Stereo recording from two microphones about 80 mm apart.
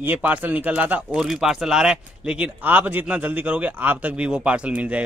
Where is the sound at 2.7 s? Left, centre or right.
Right.